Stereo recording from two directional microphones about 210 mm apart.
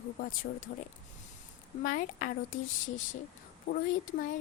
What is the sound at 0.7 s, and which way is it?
A woman's voice, 45° left (ahead or behind).